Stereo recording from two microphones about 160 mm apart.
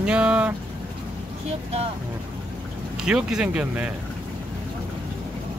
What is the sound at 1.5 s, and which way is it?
Speech, 40° right (ahead or behind).